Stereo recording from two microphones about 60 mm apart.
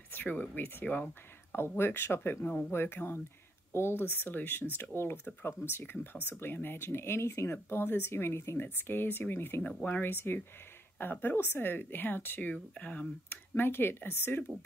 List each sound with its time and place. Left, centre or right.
0.1 s speech: left
7.5 s speech: left
8.6 s speech: left
9.6 s speech: centre
9.8 s speech: left
12.7 s speech: left
13.3 s speech: left